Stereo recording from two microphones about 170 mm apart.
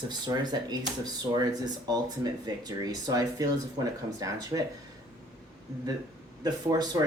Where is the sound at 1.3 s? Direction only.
25° right (ahead or behind).